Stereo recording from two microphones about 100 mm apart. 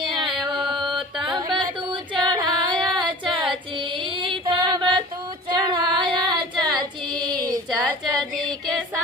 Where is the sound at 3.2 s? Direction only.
55° right (ahead or behind).